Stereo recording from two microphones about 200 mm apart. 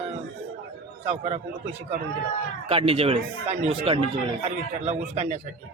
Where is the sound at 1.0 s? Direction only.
30° right (ahead or behind).